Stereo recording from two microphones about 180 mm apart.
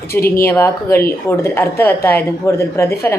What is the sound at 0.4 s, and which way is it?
A woman's voice, 15° left (ahead or behind).